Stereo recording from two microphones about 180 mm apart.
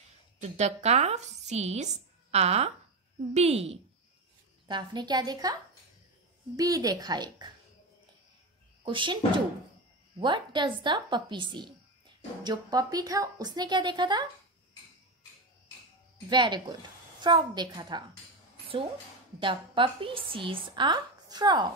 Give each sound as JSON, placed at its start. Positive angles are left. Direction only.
{"t": 0.4, "sound": "speech", "side_deg": -40}
{"t": 4.6, "sound": "a woman's voice", "side_deg": -25}
{"t": 8.8, "sound": "a woman's voice", "side_deg": -25}
{"t": 16.3, "sound": "a woman's voice", "side_deg": -25}
{"t": 19.4, "sound": "a woman's voice", "side_deg": -25}